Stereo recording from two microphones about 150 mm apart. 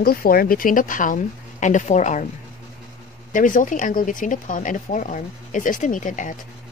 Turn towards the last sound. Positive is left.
turn(degrees=60)  # may be behind; listen again after turning